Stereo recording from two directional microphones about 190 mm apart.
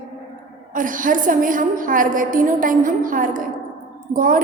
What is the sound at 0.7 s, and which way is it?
A woman's voice, 45° right (ahead or behind).